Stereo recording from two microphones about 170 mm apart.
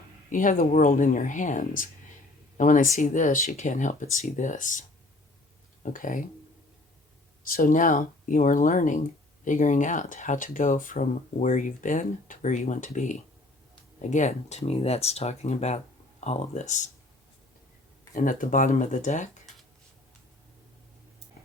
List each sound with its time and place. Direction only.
0.3 s speech: 50° left (ahead or behind)
5.8 s speech: 55° left (ahead or behind)
7.4 s speech: 55° left (ahead or behind)
18.1 s speech: 50° left (ahead or behind)